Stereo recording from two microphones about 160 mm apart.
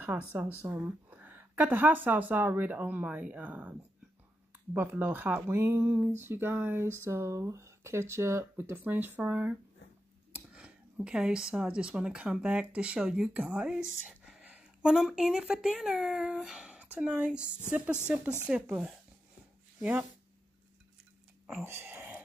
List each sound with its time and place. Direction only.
0.0 s speech: 10° right (ahead or behind)
4.7 s speech: 10° right (ahead or behind)
21.5 s a sound: 10° right (ahead or behind)